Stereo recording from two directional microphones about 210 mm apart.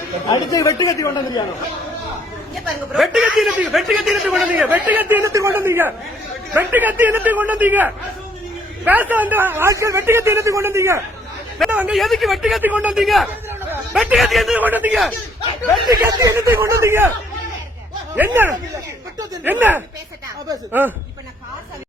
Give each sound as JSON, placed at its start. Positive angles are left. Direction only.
{"t": 0.3, "sound": "speech", "side_deg": 15}
{"t": 2.9, "sound": "a man's voice", "side_deg": -5}
{"t": 15.9, "sound": "speech", "side_deg": -15}
{"t": 19.2, "sound": "speech", "side_deg": -10}